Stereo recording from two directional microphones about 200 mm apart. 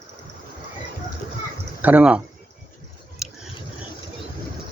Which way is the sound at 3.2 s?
5° right (ahead or behind).